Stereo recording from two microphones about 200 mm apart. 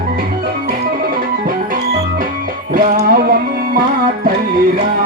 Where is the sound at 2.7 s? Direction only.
45° right (ahead or behind).